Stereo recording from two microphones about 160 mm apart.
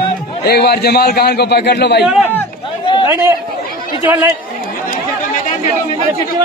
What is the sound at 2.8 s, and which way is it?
Chatter, 30° left (ahead or behind).